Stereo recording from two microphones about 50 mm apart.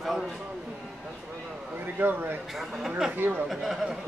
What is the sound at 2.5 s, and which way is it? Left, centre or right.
Speech, centre.